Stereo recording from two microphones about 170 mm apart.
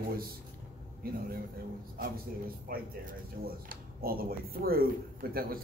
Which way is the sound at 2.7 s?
55° right (ahead or behind).